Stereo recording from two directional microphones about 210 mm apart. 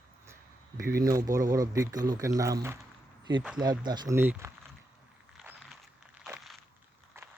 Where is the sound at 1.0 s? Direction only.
15° right (ahead or behind).